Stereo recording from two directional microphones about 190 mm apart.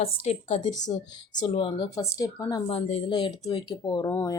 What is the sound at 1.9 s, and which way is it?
Speech, 15° left (ahead or behind).